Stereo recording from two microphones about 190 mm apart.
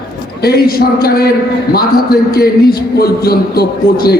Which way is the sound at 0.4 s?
55° left (ahead or behind).